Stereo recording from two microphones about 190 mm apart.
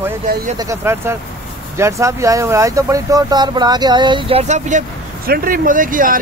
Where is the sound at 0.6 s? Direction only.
15° right (ahead or behind); by 6.1 s 45° right (ahead or behind).